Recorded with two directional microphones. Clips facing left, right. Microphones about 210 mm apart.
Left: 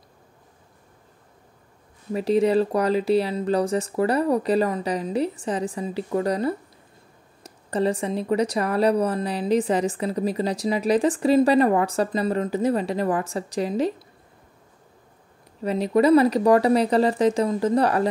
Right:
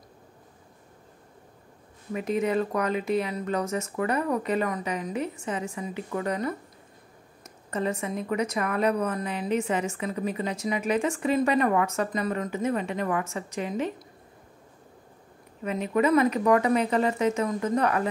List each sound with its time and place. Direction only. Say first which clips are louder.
2.1 s a woman's voice: left 6 dB; 35° left (ahead or behind)
15.6 s a woman's voice: left 5 dB; 35° left (ahead or behind)